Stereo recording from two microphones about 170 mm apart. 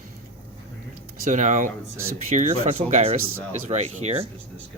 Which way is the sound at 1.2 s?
45° right (ahead or behind).